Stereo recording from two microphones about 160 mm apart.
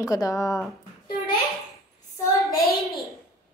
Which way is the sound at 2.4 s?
Centre (ahead or behind).